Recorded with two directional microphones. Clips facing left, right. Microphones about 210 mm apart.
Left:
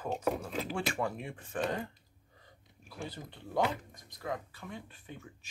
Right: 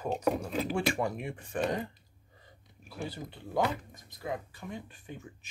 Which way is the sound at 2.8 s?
10° right (ahead or behind).